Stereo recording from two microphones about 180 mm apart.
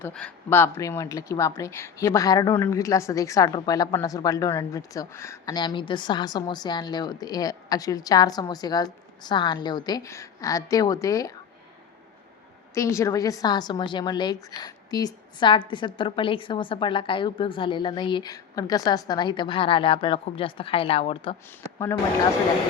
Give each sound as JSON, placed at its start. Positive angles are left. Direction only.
{"t": 0.0, "sound": "speech", "side_deg": 5}
{"t": 12.7, "sound": "speech", "side_deg": 15}